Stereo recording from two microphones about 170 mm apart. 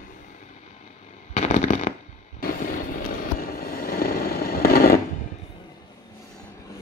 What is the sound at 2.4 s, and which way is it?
Vehicle, 50° left (ahead or behind).